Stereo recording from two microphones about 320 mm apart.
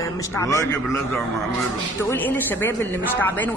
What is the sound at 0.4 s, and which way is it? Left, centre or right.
Speech, centre.